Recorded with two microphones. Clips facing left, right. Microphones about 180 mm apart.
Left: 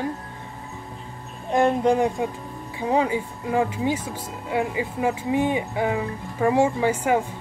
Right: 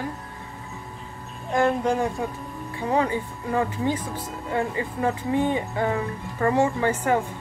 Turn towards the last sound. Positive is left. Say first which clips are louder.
# left 1 dB
turn(degrees=10)  # may be behind; listen again after turning